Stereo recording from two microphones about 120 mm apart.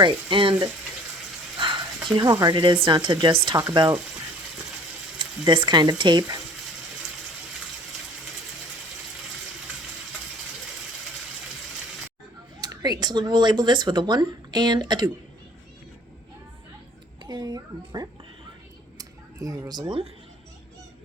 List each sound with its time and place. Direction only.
0.0 s speech: 45° right (ahead or behind)
1.5 s a sound: 40° right (ahead or behind)
2.7 s speech: 45° right (ahead or behind)
5.2 s speech: 40° right (ahead or behind)
12.5 s speech: 30° right (ahead or behind)
17.2 s speech: 35° right (ahead or behind)
18.9 s a sound: 30° right (ahead or behind)